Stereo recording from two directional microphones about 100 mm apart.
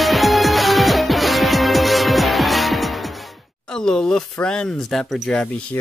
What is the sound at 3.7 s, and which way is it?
Speech, 5° left (ahead or behind).